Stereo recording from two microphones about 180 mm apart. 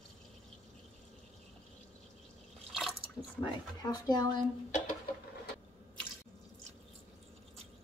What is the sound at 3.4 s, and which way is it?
Speech, 20° left (ahead or behind).